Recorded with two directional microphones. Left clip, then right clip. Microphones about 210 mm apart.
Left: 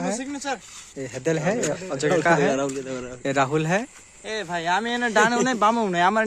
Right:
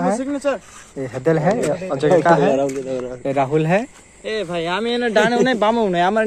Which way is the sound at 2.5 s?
45° left (ahead or behind).